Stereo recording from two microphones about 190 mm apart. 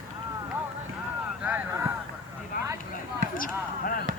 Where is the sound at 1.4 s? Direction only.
10° right (ahead or behind).